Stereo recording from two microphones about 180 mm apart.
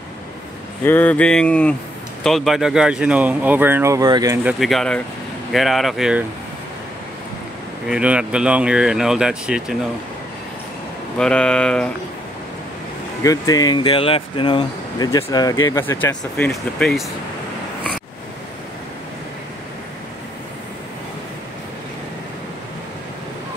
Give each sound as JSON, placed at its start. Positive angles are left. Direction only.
{"t": 0.8, "sound": "a sound", "side_deg": 10}
{"t": 2.2, "sound": "speech", "side_deg": 0}
{"t": 4.5, "sound": "speech", "side_deg": 0}
{"t": 7.9, "sound": "speech", "side_deg": -5}
{"t": 11.1, "sound": "speech", "side_deg": 5}
{"t": 13.2, "sound": "speech", "side_deg": 20}
{"t": 15.8, "sound": "a sound", "side_deg": 10}
{"t": 16.3, "sound": "speech", "side_deg": 0}